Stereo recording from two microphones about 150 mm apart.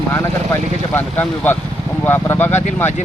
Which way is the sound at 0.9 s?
15° left (ahead or behind).